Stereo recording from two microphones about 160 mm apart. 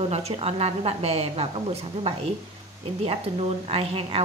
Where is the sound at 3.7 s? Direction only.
35° right (ahead or behind).